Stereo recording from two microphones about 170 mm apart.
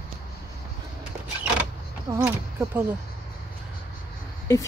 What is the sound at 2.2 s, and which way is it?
Speech, 15° right (ahead or behind).